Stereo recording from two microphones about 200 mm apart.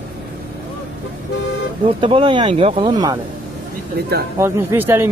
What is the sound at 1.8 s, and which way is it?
Speech, 25° right (ahead or behind).